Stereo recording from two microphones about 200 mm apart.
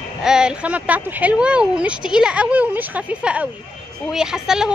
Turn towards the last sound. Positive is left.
turn(degrees=-5)  # may be behind; listen again after turning